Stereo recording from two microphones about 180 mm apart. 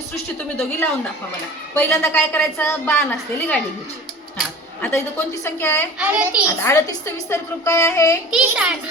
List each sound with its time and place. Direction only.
0.3 s a woman's voice: 5° left (ahead or behind)
6.0 s a child's voice: 5° right (ahead or behind)
6.6 s a woman's voice: 15° left (ahead or behind)
8.3 s a child's voice: 5° right (ahead or behind)